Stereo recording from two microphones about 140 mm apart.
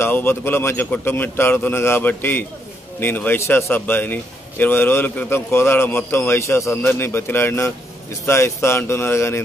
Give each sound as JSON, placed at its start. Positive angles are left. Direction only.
{"t": 0.0, "sound": "a man's voice", "side_deg": 15}